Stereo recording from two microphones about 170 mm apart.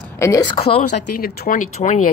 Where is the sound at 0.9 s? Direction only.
65° left (ahead or behind).